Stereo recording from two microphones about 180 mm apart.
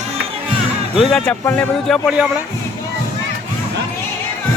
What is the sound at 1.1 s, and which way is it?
Speech, 10° left (ahead or behind).